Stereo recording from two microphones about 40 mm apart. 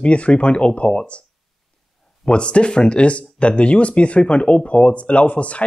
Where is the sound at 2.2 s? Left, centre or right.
Left.